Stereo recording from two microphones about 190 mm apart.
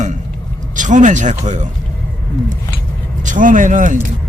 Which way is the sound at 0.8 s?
40° right (ahead or behind).